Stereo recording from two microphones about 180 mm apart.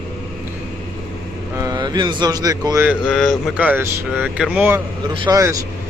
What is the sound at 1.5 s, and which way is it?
Speech, 20° right (ahead or behind).